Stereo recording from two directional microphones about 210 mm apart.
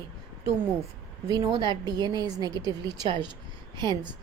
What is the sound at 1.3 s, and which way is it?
A woman's voice, 20° right (ahead or behind).